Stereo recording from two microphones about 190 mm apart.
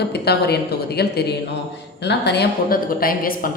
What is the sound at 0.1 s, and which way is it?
A woman's voice, 60° left (ahead or behind).